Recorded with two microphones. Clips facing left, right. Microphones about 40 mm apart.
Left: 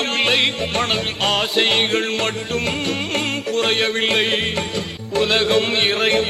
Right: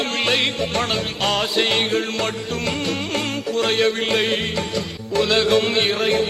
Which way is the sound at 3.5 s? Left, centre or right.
Left.